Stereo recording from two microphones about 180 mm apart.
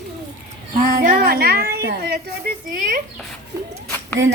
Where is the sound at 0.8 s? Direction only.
50° right (ahead or behind).